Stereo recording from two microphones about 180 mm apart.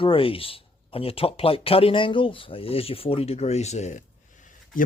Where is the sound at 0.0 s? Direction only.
30° left (ahead or behind).